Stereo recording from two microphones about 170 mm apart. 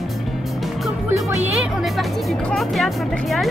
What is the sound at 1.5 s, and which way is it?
Speech, 5° right (ahead or behind).